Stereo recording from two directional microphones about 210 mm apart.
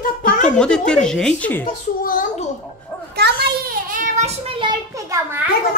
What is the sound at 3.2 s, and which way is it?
Child singing, 50° right (ahead or behind).